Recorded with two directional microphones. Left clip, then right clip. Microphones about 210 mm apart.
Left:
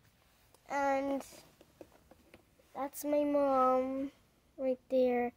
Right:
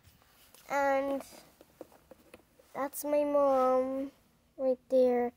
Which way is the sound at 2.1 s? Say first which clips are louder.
Right 6 dB; 50° right (ahead or behind).